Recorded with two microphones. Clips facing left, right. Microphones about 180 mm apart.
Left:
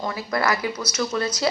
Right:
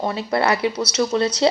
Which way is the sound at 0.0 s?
25° right (ahead or behind).